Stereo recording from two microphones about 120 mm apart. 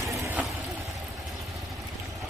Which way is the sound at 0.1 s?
25° right (ahead or behind).